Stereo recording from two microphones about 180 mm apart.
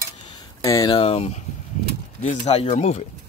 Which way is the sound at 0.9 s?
35° left (ahead or behind).